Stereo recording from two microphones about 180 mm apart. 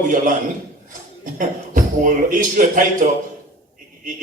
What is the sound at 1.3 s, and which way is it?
A woman's voice, 45° right (ahead or behind).